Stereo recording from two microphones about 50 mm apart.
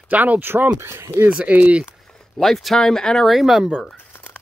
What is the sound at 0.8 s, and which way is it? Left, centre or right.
Speech, right.